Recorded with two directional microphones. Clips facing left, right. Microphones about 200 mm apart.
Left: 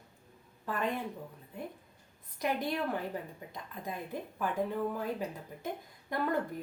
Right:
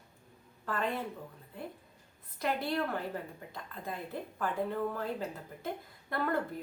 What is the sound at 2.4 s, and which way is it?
A woman's voice, 15° left (ahead or behind).